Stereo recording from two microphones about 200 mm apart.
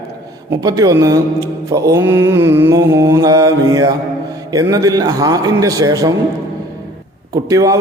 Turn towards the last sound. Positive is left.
turn(degrees=-15)  # may be behind; listen again after turning